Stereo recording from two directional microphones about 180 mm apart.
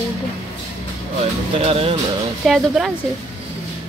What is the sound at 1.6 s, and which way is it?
Speech, 35° right (ahead or behind).